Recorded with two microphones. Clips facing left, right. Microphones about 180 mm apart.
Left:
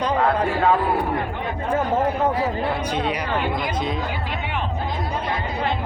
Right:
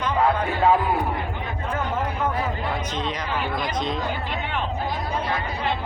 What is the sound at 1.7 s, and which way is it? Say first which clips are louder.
Speech: left 7 dB; 35° left (ahead or behind).